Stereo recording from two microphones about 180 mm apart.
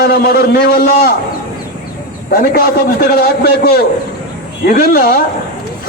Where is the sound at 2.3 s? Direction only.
55° left (ahead or behind).